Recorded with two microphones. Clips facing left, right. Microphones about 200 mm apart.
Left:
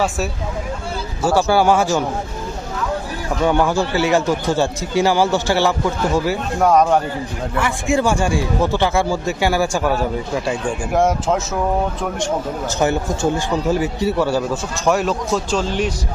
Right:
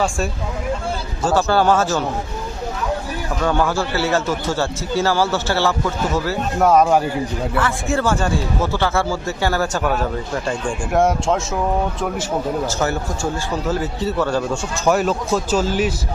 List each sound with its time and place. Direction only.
1.2 s speech: 10° left (ahead or behind)
3.4 s speech: 15° left (ahead or behind)
6.6 s speech: centre (ahead or behind)
7.6 s speech: 15° left (ahead or behind)
12.6 s speech: 15° left (ahead or behind); by 15.9 s 5° right (ahead or behind)